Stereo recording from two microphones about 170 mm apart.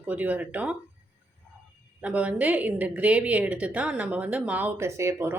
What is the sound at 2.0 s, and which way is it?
Speech, 10° right (ahead or behind).